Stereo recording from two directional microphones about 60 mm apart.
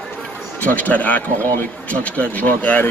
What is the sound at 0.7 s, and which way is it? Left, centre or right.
Speech, left.